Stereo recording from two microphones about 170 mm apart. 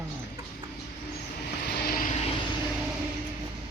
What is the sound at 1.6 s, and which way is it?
Vehicle, 65° left (ahead or behind).